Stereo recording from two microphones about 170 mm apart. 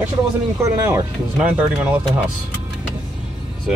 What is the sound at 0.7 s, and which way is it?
Speech, 15° right (ahead or behind).